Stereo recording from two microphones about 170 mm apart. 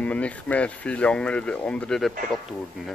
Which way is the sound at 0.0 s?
5° left (ahead or behind).